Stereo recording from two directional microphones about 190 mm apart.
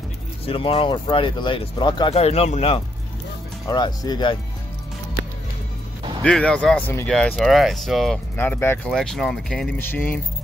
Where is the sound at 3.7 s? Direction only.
20° left (ahead or behind).